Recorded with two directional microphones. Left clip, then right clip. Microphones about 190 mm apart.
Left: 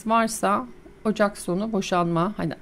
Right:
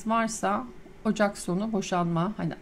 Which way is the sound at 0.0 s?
30° left (ahead or behind).